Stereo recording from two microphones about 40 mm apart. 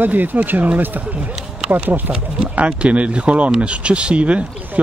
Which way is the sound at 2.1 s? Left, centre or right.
Right.